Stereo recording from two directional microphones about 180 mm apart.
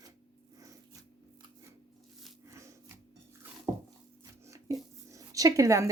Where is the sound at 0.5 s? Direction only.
20° right (ahead or behind).